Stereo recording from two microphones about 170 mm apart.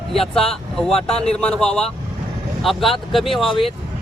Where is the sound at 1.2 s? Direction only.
5° left (ahead or behind).